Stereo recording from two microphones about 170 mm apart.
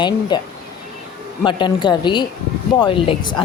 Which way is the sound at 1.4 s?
25° left (ahead or behind).